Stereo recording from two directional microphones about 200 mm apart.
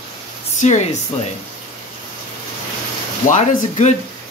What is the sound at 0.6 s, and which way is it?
Speech, 35° left (ahead or behind).